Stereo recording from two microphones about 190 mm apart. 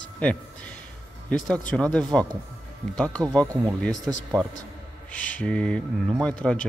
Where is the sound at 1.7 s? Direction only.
5° left (ahead or behind).